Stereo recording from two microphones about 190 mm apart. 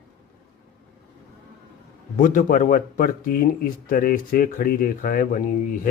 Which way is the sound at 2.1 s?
45° left (ahead or behind).